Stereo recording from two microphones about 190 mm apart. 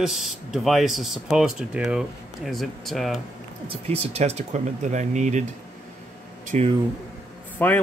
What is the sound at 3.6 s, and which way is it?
Speech, 35° right (ahead or behind).